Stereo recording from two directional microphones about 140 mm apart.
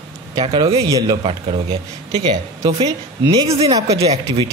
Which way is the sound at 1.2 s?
45° right (ahead or behind).